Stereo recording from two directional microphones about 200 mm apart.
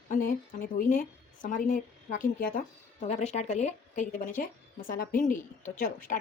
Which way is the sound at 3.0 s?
35° left (ahead or behind).